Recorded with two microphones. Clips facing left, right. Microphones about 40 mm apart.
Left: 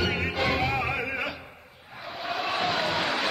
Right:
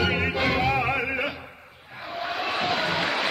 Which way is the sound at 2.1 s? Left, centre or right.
Centre.